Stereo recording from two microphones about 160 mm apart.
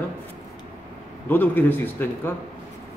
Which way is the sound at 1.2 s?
10° left (ahead or behind).